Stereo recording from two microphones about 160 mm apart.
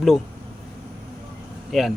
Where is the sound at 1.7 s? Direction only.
Centre (ahead or behind).